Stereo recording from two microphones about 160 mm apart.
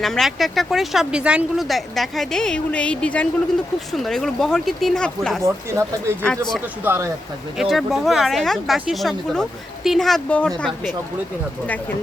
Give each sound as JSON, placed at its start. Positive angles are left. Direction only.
{"t": 0.0, "sound": "speech", "side_deg": 0}
{"t": 5.4, "sound": "speech", "side_deg": -15}
{"t": 6.2, "sound": "speech", "side_deg": 5}
{"t": 6.8, "sound": "speech", "side_deg": -15}
{"t": 7.6, "sound": "speech", "side_deg": 0}